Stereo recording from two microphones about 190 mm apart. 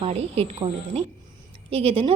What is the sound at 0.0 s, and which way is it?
A woman's voice, 35° right (ahead or behind).